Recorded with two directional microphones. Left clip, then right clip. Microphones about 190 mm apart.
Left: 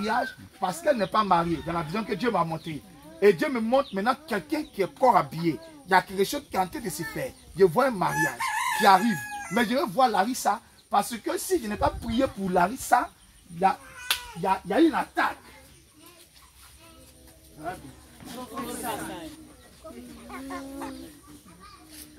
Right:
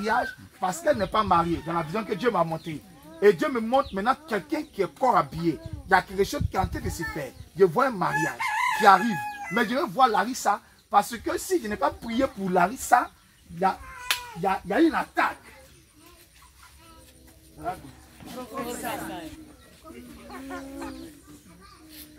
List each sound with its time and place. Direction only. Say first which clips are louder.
0.0 s speech: right 2 dB; 25° left (ahead or behind)
12.8 s speech: right 2 dB; centre (ahead or behind)
20.2 s a sound: left 1 dB; 30° right (ahead or behind)